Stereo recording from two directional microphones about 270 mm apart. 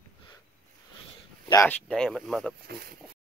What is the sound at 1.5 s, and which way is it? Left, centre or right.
Speech, centre.